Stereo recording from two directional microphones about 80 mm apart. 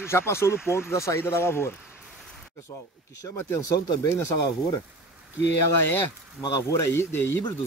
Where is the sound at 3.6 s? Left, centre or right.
Left.